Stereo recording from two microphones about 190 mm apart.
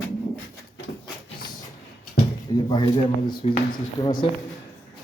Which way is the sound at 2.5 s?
25° left (ahead or behind).